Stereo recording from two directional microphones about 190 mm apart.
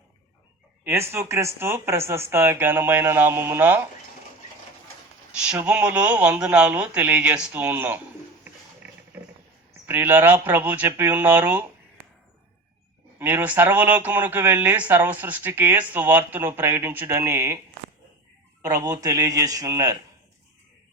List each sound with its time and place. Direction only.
0.9 s speech: 15° right (ahead or behind)
5.5 s speech: 5° right (ahead or behind)
8.4 s a sound: 10° right (ahead or behind)
9.8 s speech: 10° right (ahead or behind)
13.1 s speech: 10° right (ahead or behind)
18.6 s speech: 20° right (ahead or behind)